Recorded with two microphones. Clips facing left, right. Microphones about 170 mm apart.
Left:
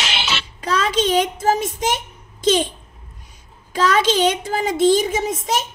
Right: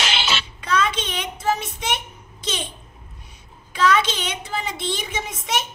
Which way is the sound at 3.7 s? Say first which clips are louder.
Left 3 dB; 40° left (ahead or behind).